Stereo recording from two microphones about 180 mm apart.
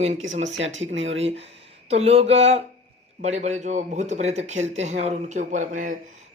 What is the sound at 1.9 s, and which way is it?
Speech, 35° right (ahead or behind).